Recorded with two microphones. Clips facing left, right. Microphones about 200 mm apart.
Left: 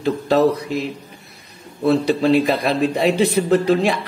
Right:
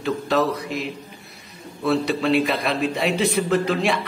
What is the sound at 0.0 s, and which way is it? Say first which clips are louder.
Speech: left 5 dB; 35° left (ahead or behind).